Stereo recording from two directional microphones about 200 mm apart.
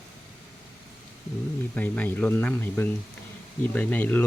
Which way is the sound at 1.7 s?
5° left (ahead or behind).